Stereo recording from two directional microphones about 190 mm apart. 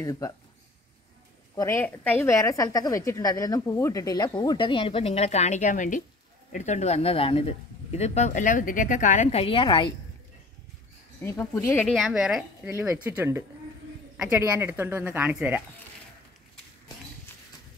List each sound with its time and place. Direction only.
0.0 s speech: 15° left (ahead or behind)
1.5 s a woman's voice: 15° left (ahead or behind)
11.1 s speech: 10° left (ahead or behind)
11.9 s a woman's voice: centre (ahead or behind)
12.7 s speech: 15° right (ahead or behind)